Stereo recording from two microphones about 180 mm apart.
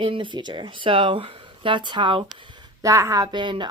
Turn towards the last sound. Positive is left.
turn(degrees=-25)  # may be behind; listen again after turning